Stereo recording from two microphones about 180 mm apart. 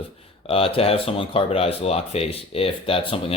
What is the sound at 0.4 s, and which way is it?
Speech, 30° left (ahead or behind).